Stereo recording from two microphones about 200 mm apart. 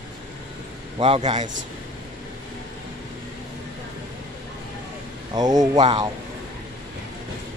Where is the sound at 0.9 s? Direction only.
25° right (ahead or behind).